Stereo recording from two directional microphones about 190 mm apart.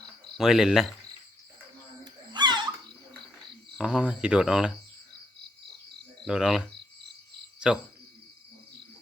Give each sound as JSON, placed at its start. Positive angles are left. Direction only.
{"t": 0.3, "sound": "speech", "side_deg": 0}
{"t": 2.3, "sound": "a sound", "side_deg": -25}
{"t": 3.8, "sound": "speech", "side_deg": -5}
{"t": 6.2, "sound": "speech", "side_deg": 0}
{"t": 7.6, "sound": "speech", "side_deg": -5}